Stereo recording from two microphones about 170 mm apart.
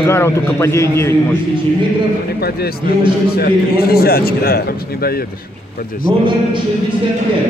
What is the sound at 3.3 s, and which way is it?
A man's voice, 65° left (ahead or behind).